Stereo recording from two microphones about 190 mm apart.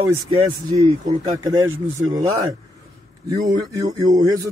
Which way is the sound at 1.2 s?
15° right (ahead or behind).